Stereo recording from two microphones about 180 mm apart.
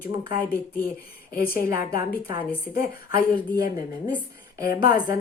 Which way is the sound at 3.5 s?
20° right (ahead or behind).